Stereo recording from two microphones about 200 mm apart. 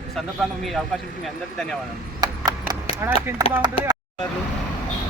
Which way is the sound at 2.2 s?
20° right (ahead or behind).